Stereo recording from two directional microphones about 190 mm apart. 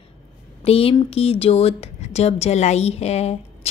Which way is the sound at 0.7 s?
30° left (ahead or behind).